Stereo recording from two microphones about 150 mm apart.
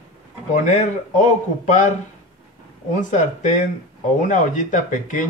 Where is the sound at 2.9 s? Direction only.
60° left (ahead or behind).